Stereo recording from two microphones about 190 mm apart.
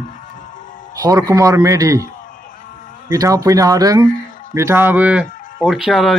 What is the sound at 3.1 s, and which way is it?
A man's voice, 15° right (ahead or behind).